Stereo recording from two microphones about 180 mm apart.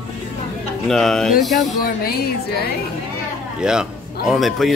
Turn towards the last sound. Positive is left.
turn(degrees=0)  # may be behind; listen again after turning